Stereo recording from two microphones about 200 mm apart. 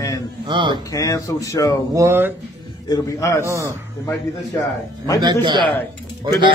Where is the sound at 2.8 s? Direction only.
15° left (ahead or behind).